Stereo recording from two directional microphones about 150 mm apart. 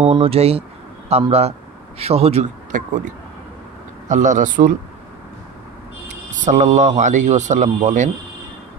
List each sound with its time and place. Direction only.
0.0 s speech: 40° right (ahead or behind)
4.1 s a man's voice: 55° right (ahead or behind)
6.4 s speech: 55° right (ahead or behind)